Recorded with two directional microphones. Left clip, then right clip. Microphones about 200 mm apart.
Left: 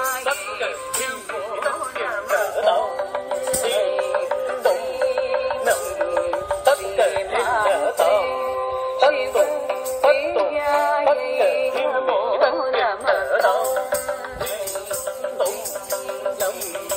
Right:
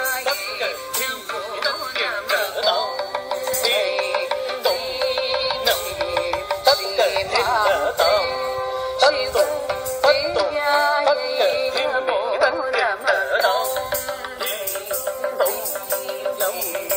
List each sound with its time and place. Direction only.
0.0 s music: 35° left (ahead or behind)
1.6 s music: 20° left (ahead or behind)